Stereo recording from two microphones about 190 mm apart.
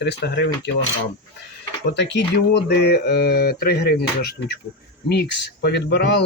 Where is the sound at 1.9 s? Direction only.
65° left (ahead or behind).